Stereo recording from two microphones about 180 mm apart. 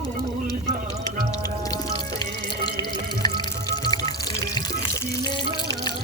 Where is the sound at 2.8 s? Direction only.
25° left (ahead or behind).